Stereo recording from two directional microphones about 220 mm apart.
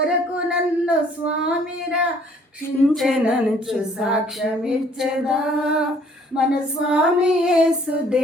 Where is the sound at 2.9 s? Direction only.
Centre (ahead or behind).